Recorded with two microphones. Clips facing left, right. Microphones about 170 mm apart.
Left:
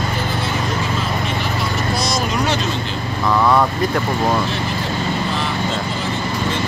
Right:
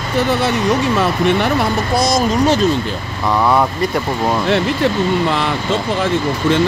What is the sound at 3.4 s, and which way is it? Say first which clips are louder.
Speech: right 1 dB; 10° right (ahead or behind).